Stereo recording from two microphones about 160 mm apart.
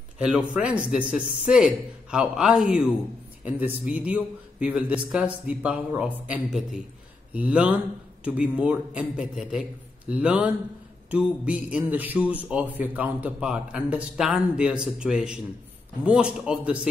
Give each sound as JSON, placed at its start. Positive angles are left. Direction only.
{"t": 0.2, "sound": "a man's voice", "side_deg": -5}